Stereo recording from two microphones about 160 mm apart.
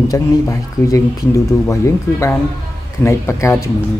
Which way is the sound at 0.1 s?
20° left (ahead or behind).